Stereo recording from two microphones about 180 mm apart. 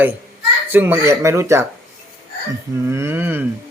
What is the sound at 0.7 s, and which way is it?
Speech, 10° right (ahead or behind).